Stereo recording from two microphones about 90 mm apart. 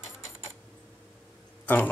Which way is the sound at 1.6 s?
20° left (ahead or behind).